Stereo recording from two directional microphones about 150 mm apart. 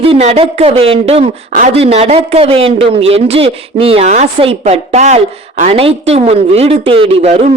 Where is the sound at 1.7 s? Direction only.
45° right (ahead or behind).